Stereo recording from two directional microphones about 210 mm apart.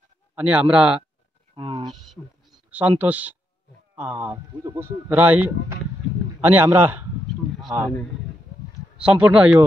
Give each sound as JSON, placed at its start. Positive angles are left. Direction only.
{"t": 0.4, "sound": "speech", "side_deg": -5}
{"t": 1.5, "sound": "a sound", "side_deg": -20}
{"t": 1.9, "sound": "speech", "side_deg": 0}
{"t": 8.9, "sound": "speech", "side_deg": -5}